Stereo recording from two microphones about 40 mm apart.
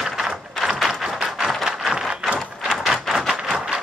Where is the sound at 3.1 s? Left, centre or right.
Centre.